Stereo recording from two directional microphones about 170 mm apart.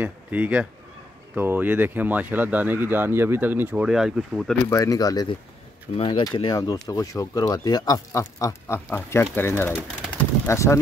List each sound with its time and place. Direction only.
0.0 s speech: 10° right (ahead or behind)
4.6 s speech: 20° left (ahead or behind)
10.1 s bird: 15° left (ahead or behind)